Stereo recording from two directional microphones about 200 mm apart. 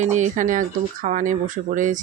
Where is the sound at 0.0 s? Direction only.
40° right (ahead or behind).